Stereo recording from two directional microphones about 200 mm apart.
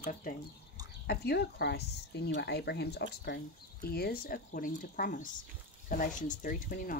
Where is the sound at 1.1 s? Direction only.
50° left (ahead or behind).